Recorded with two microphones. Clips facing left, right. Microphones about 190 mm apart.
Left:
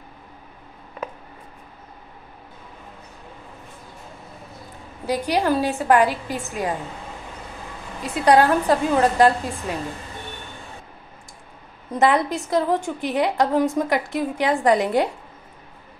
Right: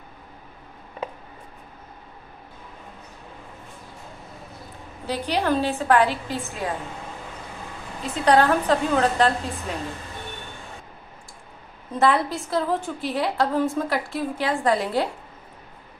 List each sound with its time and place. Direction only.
5.0 s a woman's voice: 10° left (ahead or behind)
8.0 s a woman's voice: 10° left (ahead or behind)
12.0 s a woman's voice: 20° left (ahead or behind)